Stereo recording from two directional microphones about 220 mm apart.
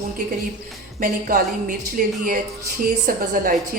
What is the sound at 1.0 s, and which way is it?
A woman's voice, 40° right (ahead or behind).